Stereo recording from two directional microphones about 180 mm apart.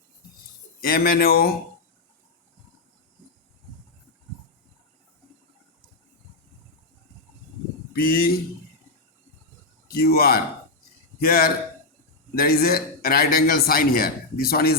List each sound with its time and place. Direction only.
0.8 s a man's voice: 55° left (ahead or behind)
7.9 s a man's voice: 55° left (ahead or behind)
9.9 s a man's voice: 60° left (ahead or behind)